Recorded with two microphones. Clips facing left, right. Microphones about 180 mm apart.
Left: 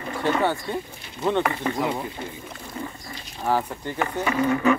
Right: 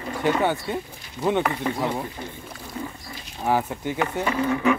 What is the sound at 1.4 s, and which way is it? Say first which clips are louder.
Speech: even; centre (ahead or behind).